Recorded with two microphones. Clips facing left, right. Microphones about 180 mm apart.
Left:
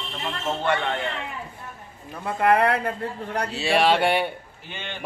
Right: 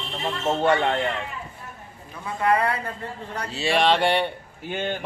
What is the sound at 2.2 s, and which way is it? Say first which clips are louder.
Speech: left 3 dB; 55° left (ahead or behind).